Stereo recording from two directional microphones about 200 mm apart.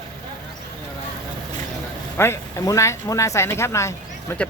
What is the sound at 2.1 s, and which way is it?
Speech, 10° left (ahead or behind).